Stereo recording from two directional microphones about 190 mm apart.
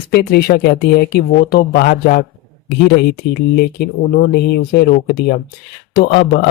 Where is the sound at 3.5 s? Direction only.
55° left (ahead or behind).